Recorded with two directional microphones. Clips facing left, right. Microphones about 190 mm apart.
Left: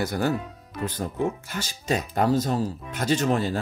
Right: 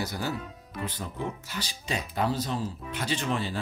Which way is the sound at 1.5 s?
45° left (ahead or behind).